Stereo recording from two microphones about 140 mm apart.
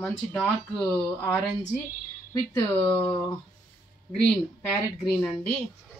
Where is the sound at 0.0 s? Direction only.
5° left (ahead or behind).